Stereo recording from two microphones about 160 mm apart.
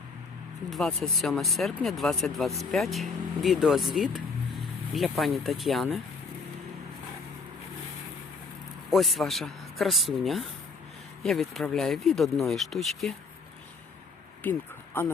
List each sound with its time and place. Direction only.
0.7 s speech: 5° left (ahead or behind)
8.9 s speech: centre (ahead or behind)
14.4 s speech: 10° left (ahead or behind)